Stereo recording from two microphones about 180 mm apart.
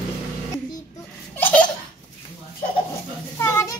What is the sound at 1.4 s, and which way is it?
Laughter, 10° left (ahead or behind).